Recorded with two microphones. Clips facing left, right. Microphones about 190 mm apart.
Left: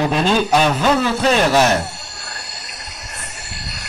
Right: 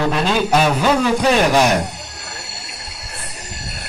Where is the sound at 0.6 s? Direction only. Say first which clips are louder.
Even; 5° right (ahead or behind).